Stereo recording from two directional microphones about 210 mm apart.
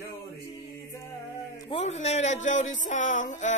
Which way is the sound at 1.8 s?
30° left (ahead or behind).